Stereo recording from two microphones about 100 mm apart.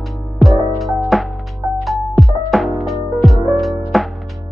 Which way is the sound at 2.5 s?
Centre (ahead or behind).